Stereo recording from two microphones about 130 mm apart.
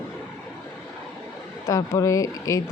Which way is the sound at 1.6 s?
25° left (ahead or behind).